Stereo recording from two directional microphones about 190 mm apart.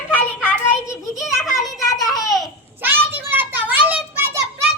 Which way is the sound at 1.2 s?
Centre (ahead or behind).